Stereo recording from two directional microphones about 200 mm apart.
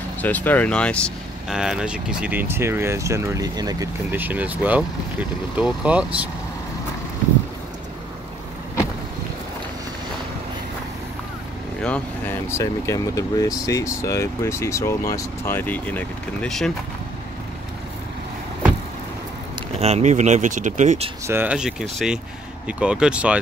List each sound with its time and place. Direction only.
0.2 s speech: 10° left (ahead or behind)
11.8 s speech: 10° left (ahead or behind)
19.8 s speech: 35° right (ahead or behind)
21.3 s speech: 10° right (ahead or behind)